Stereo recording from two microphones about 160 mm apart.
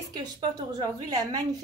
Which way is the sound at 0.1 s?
25° right (ahead or behind).